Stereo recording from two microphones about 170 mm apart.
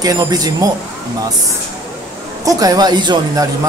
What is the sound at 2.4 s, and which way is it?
Speech, 20° right (ahead or behind).